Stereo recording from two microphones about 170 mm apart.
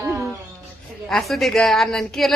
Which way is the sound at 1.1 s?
Centre (ahead or behind).